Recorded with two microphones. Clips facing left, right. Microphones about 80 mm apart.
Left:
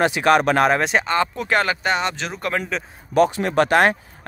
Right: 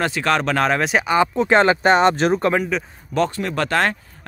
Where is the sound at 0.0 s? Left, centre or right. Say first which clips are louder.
Left 3 dB; centre.